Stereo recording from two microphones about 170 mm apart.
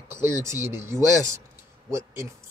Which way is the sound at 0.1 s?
15° right (ahead or behind).